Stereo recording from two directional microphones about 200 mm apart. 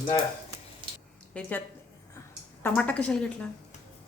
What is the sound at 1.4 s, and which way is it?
Speech, 10° left (ahead or behind).